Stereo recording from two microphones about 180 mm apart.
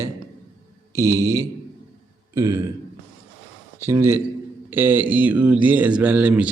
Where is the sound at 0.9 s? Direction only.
15° right (ahead or behind).